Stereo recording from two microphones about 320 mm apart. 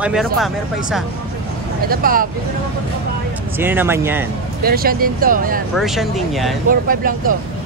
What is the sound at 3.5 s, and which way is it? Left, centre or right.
Speech, centre.